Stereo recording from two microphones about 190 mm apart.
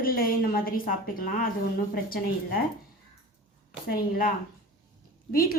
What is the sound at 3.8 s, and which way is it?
Speech, 50° left (ahead or behind).